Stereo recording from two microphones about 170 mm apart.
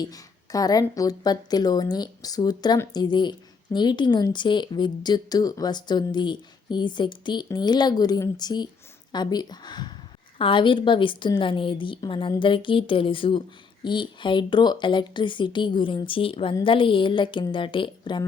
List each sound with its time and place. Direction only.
0.0 s a woman's voice: 20° left (ahead or behind)